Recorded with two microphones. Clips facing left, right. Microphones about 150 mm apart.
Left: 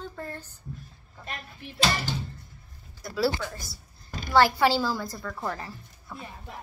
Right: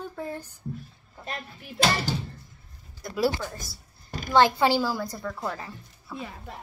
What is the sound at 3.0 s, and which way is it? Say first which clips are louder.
Speech: right 1 dB; 15° right (ahead or behind).